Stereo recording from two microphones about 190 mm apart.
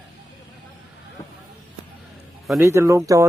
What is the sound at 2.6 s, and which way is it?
Speech, 15° right (ahead or behind).